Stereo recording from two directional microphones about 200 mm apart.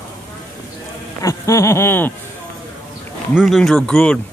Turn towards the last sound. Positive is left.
turn(degrees=5)  # may be behind; listen again after turning